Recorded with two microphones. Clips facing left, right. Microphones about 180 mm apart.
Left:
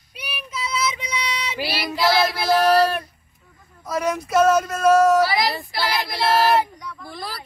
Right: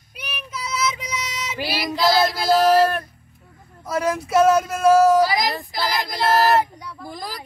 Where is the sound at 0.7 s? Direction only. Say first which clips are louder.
Right 1 dB; 50° right (ahead or behind).